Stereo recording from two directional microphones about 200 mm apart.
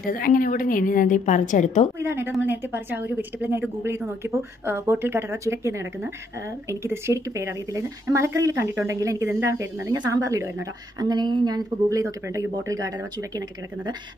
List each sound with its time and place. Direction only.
0.0 s a woman's voice: 45° left (ahead or behind)
2.0 s a woman's voice: 10° right (ahead or behind)